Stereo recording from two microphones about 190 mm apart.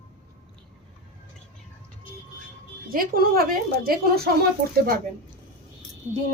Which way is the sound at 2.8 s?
50° right (ahead or behind).